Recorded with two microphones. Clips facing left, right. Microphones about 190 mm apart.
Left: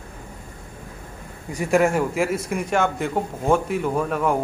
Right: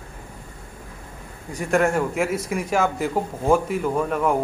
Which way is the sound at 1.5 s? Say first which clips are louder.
Left 1 dB; 5° left (ahead or behind).